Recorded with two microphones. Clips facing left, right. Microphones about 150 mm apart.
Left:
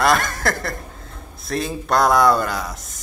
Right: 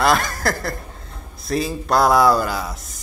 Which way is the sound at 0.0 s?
Centre (ahead or behind).